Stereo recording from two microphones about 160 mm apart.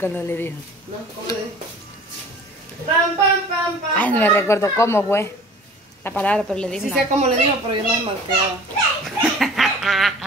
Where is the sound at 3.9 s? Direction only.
10° left (ahead or behind).